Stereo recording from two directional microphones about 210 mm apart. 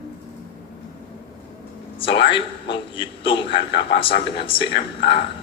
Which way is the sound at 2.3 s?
25° left (ahead or behind).